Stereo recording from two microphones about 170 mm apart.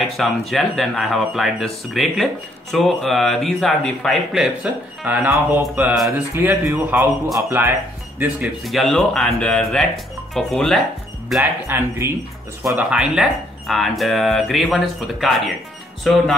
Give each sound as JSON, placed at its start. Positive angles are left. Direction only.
{"t": 0.2, "sound": "speech", "side_deg": 0}
{"t": 11.6, "sound": "speech", "side_deg": -15}